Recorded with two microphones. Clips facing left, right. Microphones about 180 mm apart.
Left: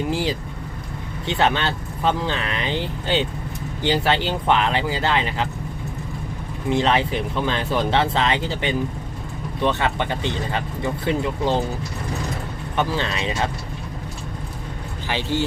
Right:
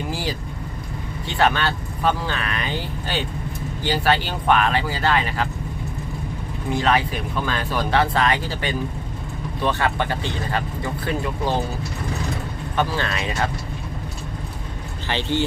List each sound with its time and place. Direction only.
0.1 s vehicle: 20° left (ahead or behind)
1.3 s speech: 20° left (ahead or behind)
6.7 s speech: 25° left (ahead or behind)
12.7 s speech: 20° left (ahead or behind)
15.0 s speech: 5° left (ahead or behind)